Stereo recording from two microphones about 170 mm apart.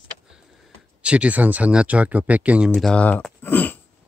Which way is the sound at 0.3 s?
Centre (ahead or behind).